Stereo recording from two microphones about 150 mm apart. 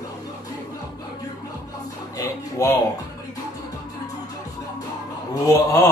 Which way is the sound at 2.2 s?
25° left (ahead or behind).